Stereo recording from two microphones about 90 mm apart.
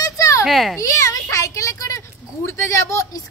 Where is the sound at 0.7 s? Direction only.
35° left (ahead or behind).